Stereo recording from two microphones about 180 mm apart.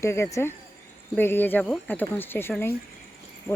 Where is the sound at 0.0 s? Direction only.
15° left (ahead or behind).